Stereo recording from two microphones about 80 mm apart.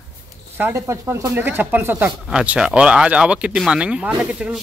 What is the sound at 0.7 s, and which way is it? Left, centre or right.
Speech, right.